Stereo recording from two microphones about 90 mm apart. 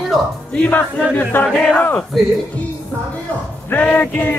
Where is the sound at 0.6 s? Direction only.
20° left (ahead or behind).